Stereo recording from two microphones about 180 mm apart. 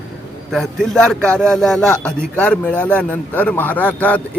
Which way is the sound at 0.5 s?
Centre (ahead or behind).